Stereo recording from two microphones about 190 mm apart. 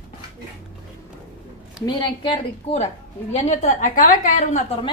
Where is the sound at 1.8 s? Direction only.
20° left (ahead or behind); by 4.6 s 45° left (ahead or behind).